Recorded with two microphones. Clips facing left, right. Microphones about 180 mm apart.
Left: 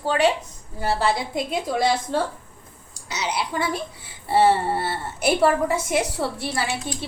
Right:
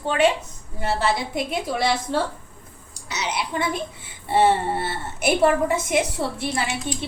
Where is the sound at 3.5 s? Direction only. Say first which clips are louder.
Even; 20° right (ahead or behind).